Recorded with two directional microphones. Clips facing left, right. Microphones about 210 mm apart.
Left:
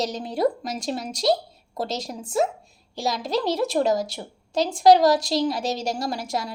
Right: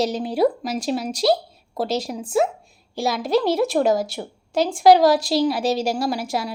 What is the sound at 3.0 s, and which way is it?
Speech, 55° right (ahead or behind).